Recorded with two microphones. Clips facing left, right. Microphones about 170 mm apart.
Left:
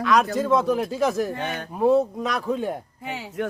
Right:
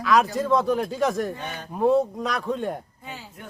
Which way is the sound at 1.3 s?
65° left (ahead or behind).